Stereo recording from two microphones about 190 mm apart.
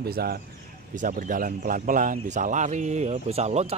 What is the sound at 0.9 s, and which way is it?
Speech, 45° right (ahead or behind).